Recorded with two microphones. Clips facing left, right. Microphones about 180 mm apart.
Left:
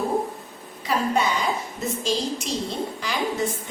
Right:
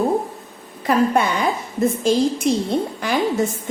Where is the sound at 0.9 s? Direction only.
55° right (ahead or behind).